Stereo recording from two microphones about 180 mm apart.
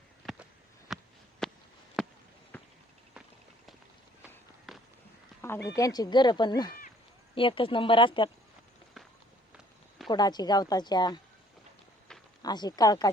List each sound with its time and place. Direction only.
0.9 s a sound: centre (ahead or behind)
2.5 s basketball bounce: 10° left (ahead or behind)
4.7 s walk: centre (ahead or behind)
5.6 s speech: 20° left (ahead or behind)
10.1 s speech: 25° left (ahead or behind)
12.4 s speech: 20° left (ahead or behind)